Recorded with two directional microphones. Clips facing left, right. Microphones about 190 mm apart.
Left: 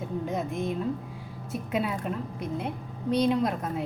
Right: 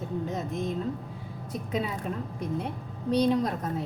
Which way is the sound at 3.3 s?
10° left (ahead or behind).